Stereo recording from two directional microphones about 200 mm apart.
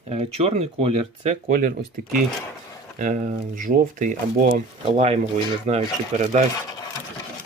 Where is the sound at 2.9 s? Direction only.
40° right (ahead or behind).